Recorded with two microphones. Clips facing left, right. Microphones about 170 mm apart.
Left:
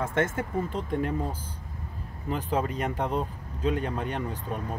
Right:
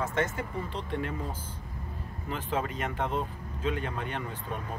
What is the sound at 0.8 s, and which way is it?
Speech, 40° left (ahead or behind).